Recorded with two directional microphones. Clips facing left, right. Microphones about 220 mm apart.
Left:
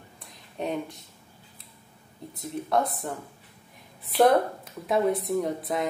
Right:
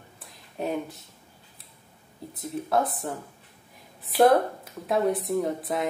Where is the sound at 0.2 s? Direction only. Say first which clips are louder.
Right 1 dB; 5° right (ahead or behind).